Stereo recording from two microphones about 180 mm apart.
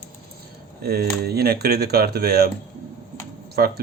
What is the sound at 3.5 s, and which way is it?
Speech, 60° right (ahead or behind).